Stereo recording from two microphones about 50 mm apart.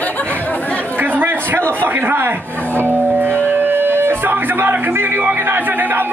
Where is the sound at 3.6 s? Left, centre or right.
Right.